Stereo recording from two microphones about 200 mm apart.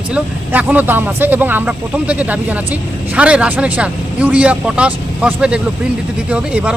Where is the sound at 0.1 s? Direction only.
10° right (ahead or behind).